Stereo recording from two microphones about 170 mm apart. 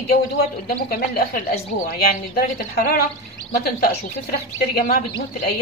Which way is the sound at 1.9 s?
60° left (ahead or behind).